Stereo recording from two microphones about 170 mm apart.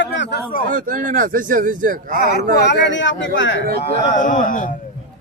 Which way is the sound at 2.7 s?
90° left.